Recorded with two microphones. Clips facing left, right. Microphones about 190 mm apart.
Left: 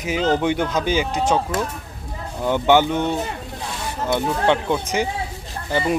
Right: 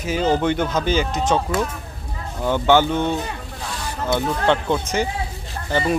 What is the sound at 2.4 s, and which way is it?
A man's voice, 15° left (ahead or behind).